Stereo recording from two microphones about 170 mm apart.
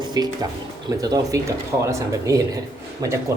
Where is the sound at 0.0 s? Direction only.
25° right (ahead or behind).